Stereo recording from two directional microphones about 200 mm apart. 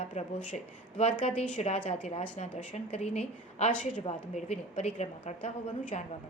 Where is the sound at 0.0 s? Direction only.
35° left (ahead or behind).